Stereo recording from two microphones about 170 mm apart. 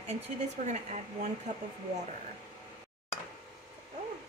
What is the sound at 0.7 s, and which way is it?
Speech, 45° right (ahead or behind).